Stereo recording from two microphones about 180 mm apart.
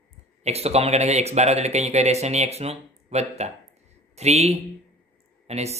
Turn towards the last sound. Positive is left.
turn(degrees=-35)  # may be behind; listen again after turning